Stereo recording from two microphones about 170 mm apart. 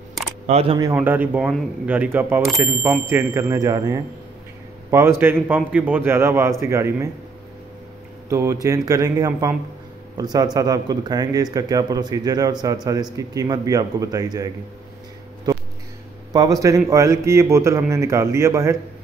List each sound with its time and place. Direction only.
0.5 s speech: 35° right (ahead or behind)
0.9 s speech: 10° right (ahead or behind)
8.3 s speech: 15° right (ahead or behind)
15.5 s a sound: 20° right (ahead or behind)
16.3 s speech: 20° right (ahead or behind)